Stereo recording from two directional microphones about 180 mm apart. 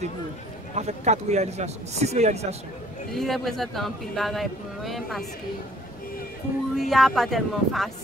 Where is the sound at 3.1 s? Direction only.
Centre (ahead or behind).